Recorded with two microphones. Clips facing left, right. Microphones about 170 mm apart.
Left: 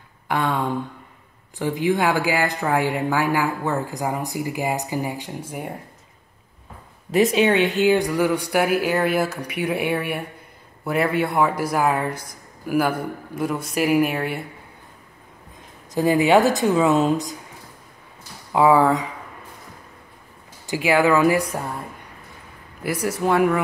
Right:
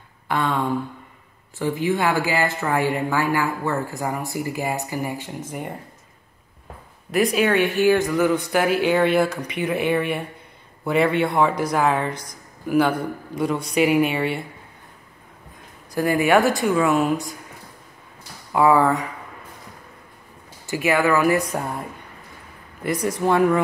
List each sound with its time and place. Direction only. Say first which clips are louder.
0.3 s a woman's voice: even; 15° left (ahead or behind)
7.3 s a woman's voice: left 1 dB; 20° left (ahead or behind); by 14.4 s centre (ahead or behind)
15.9 s speech: left 2 dB; 20° left (ahead or behind)
18.5 s a woman's voice: left 1 dB; 15° left (ahead or behind)
20.6 s a woman's voice: left 2 dB; 15° left (ahead or behind)
22.8 s a woman's voice: right 1 dB; 5° left (ahead or behind)